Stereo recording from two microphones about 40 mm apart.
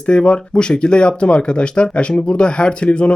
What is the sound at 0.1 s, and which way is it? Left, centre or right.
Speech, left.